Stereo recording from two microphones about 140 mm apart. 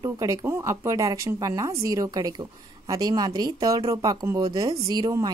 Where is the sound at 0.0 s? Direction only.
25° right (ahead or behind).